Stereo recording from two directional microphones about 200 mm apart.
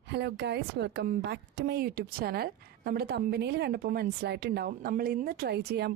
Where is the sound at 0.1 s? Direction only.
55° right (ahead or behind).